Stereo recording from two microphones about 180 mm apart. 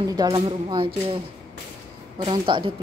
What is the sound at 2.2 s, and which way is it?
Speech, 25° right (ahead or behind).